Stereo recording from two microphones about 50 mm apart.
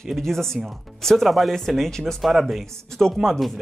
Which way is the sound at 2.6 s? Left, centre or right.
Centre.